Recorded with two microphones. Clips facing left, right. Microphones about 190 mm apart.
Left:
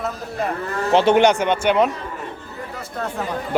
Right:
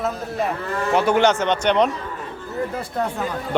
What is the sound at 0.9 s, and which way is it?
Speech, 25° left (ahead or behind).